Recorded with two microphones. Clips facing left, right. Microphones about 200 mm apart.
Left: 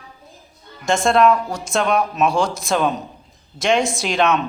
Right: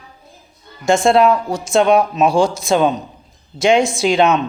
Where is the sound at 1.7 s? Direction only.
30° right (ahead or behind).